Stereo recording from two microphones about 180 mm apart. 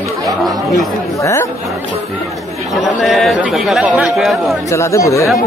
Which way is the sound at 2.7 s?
Centre (ahead or behind).